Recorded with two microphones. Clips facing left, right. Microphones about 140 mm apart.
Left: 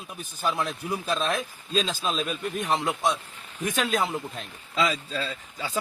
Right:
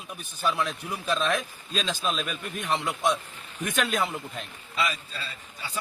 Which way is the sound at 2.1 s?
35° left (ahead or behind).